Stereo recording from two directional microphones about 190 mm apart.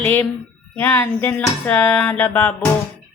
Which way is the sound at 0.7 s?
10° left (ahead or behind).